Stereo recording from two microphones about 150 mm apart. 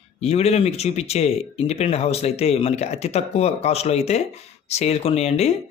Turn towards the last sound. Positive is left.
turn(degrees=45)  # may be behind; listen again after turning